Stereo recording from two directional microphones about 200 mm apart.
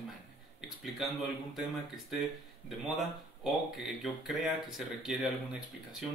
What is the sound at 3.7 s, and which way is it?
Speech, centre (ahead or behind).